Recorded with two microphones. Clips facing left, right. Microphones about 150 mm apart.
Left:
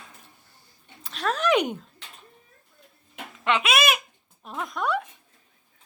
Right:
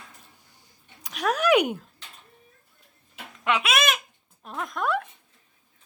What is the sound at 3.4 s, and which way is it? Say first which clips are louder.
Speech: left 1 dB; 5° right (ahead or behind).